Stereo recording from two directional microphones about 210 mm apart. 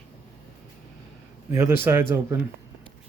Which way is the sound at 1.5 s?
10° right (ahead or behind).